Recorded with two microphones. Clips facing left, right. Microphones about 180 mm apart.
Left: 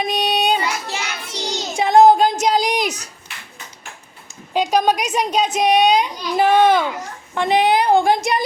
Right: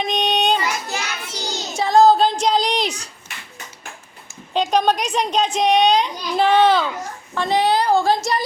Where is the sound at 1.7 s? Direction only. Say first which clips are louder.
Left 2 dB; 20° left (ahead or behind).